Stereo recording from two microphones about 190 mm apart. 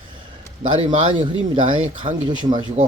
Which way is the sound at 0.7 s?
25° right (ahead or behind).